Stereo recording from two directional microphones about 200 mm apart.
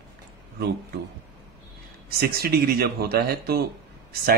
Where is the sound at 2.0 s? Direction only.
50° right (ahead or behind).